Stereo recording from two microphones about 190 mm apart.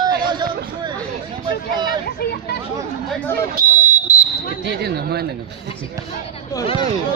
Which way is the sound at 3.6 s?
45° right (ahead or behind).